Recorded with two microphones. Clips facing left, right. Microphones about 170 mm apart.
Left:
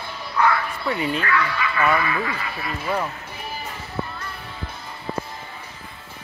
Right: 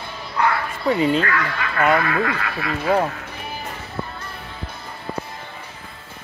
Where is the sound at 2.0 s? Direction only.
60° right (ahead or behind); by 2.9 s 75° right (ahead or behind).